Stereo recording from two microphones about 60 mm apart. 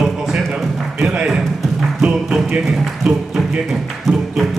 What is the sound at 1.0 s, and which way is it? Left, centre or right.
Music, centre.